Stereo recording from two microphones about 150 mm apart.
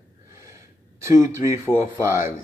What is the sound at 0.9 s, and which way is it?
Speech, 20° right (ahead or behind).